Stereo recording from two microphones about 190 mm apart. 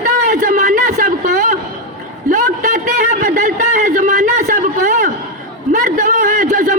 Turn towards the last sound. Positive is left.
turn(degrees=-40)  # may be behind; listen again after turning